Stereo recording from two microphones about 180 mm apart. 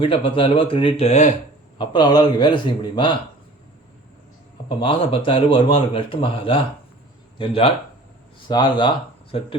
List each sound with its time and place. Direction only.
0.0 s a man's voice: 30° left (ahead or behind)
1.8 s a man's voice: 25° left (ahead or behind)
4.8 s a man's voice: 30° left (ahead or behind)